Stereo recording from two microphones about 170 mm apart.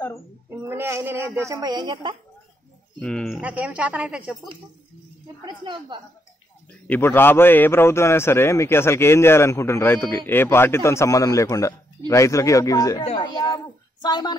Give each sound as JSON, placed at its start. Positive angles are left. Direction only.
{"t": 0.5, "sound": "a woman's voice", "side_deg": -15}
{"t": 3.0, "sound": "speech", "side_deg": 5}
{"t": 3.3, "sound": "speech", "side_deg": -10}
{"t": 5.4, "sound": "speech", "side_deg": -25}
{"t": 6.9, "sound": "a man's voice", "side_deg": 10}